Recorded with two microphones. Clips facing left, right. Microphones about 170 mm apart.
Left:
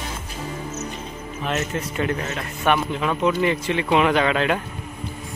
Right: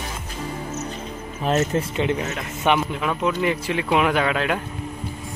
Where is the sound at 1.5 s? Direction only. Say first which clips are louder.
Right 5 dB; 30° right (ahead or behind).